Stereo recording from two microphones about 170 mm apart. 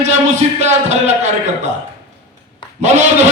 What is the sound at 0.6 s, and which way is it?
Music, 40° right (ahead or behind).